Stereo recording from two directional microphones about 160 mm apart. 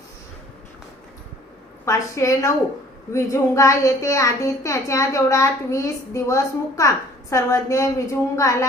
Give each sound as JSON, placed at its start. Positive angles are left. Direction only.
{"t": 1.8, "sound": "a woman's voice", "side_deg": 20}